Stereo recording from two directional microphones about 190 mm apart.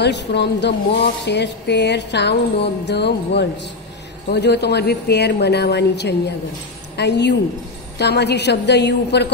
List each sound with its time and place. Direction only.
0.0 s music: 65° left (ahead or behind)